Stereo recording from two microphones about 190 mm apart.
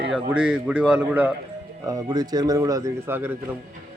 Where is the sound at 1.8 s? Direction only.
20° right (ahead or behind).